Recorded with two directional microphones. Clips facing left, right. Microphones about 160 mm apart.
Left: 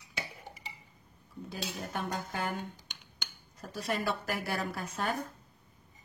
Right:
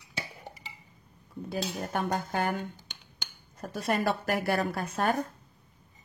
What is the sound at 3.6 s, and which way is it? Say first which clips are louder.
Speech: right 5 dB; 55° right (ahead or behind).